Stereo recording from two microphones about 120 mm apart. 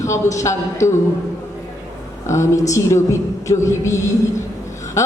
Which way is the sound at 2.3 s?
25° left (ahead or behind).